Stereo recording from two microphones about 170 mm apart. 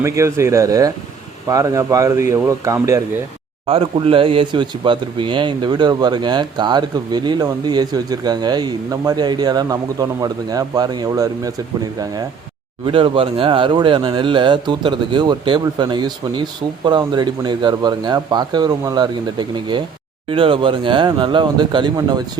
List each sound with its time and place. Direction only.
0.0 s speech: 15° right (ahead or behind)
3.7 s speech: 35° right (ahead or behind)
12.8 s speech: 30° right (ahead or behind)